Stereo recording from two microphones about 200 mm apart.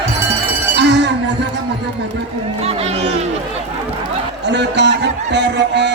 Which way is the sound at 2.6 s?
30° right (ahead or behind).